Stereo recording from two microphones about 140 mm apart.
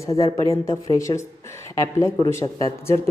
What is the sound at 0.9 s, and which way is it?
A woman's voice, 20° left (ahead or behind).